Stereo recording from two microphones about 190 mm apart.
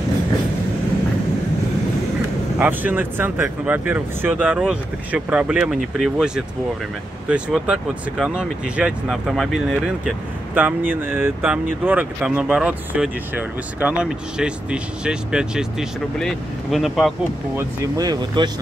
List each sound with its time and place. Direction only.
2.6 s speech: 10° right (ahead or behind)
17.6 s speech: 20° right (ahead or behind)